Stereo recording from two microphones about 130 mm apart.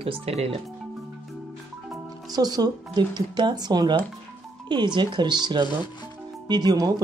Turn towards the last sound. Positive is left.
turn(degrees=-30)  # may be behind; listen again after turning